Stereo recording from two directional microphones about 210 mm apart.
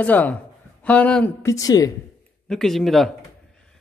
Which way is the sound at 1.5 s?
15° left (ahead or behind).